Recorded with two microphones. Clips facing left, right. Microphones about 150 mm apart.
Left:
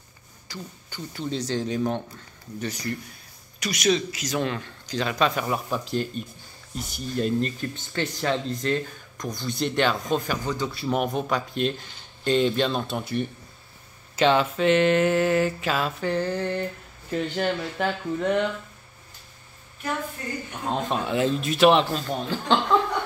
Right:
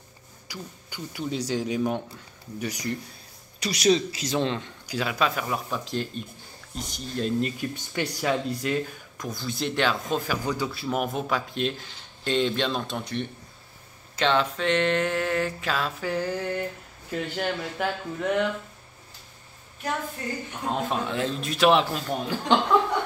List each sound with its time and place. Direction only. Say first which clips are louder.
0.5 s speech: left 1 dB; 10° right (ahead or behind)
3.5 s a man's voice: right 2 dB; 30° right (ahead or behind)
4.8 s speech: left 2 dB; 5° right (ahead or behind)
7.4 s speech: even; 10° right (ahead or behind)
20.6 s speech: left 1 dB; 5° right (ahead or behind)